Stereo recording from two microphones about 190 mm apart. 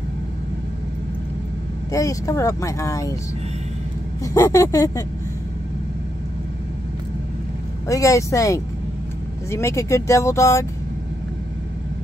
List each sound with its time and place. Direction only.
1.9 s speech: 15° left (ahead or behind)
4.2 s speech: 15° left (ahead or behind)
7.9 s speech: 15° left (ahead or behind)